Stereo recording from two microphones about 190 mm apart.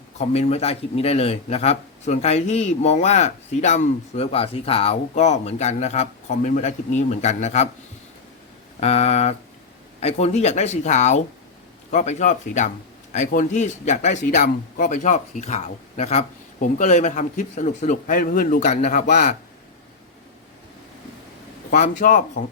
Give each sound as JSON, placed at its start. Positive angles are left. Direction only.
{"t": 0.2, "sound": "speech", "side_deg": 35}
{"t": 8.8, "sound": "speech", "side_deg": 35}
{"t": 21.7, "sound": "speech", "side_deg": 45}